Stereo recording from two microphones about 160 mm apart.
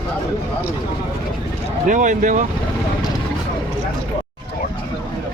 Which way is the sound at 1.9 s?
50° right (ahead or behind).